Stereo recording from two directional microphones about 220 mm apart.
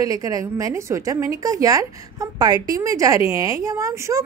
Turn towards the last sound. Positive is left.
turn(degrees=-15)  # may be behind; listen again after turning